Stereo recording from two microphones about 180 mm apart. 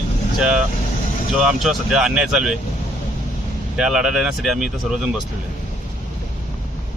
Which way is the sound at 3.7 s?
5° right (ahead or behind).